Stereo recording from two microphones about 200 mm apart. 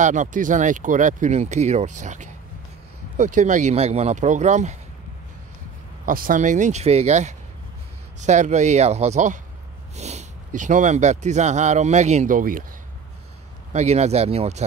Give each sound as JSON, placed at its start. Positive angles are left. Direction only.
{"t": 0.0, "sound": "speech", "side_deg": -40}
{"t": 6.0, "sound": "speech", "side_deg": -45}
{"t": 13.7, "sound": "speech", "side_deg": -35}